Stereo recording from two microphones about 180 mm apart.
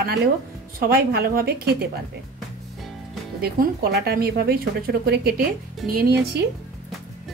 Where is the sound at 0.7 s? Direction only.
60° right (ahead or behind).